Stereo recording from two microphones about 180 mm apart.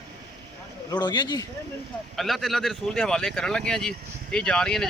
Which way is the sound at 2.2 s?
Centre (ahead or behind).